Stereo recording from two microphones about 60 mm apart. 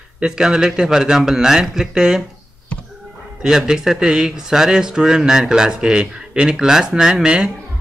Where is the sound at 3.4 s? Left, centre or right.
Centre.